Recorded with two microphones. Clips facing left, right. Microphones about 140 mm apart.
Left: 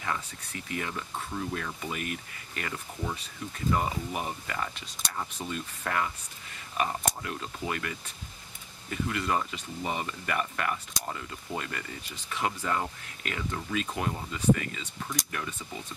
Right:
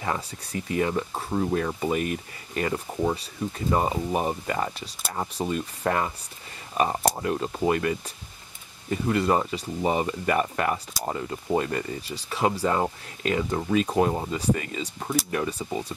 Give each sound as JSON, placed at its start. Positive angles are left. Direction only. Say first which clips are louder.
{"t": 0.0, "sound": "speech", "louder": "right 5 dB", "side_deg": -30}
{"t": 3.0, "sound": "speech", "louder": "right 10 dB", "side_deg": -45}
{"t": 3.5, "sound": "speech", "louder": "right 4 dB", "side_deg": -35}